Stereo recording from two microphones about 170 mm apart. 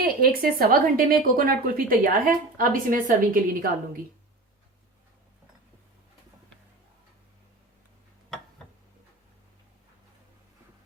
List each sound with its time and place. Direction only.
0.0 s speech: 60° right (ahead or behind)